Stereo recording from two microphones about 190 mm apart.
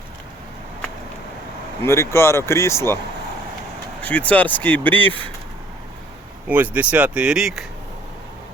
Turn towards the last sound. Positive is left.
turn(degrees=0)  # may be behind; listen again after turning